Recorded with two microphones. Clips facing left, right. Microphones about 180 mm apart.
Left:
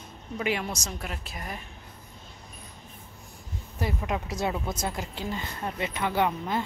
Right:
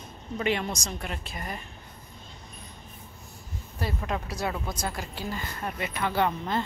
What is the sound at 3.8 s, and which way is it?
A woman's voice, 15° left (ahead or behind).